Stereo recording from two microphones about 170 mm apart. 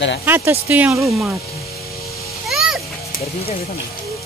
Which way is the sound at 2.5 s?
Centre (ahead or behind).